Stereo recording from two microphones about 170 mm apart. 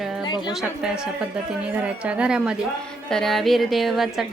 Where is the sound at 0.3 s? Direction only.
25° left (ahead or behind).